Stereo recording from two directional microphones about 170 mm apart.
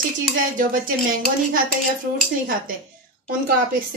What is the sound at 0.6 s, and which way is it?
Speech, 50° right (ahead or behind).